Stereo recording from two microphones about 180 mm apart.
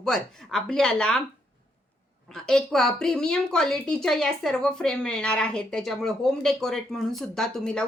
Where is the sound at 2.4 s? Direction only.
5° left (ahead or behind).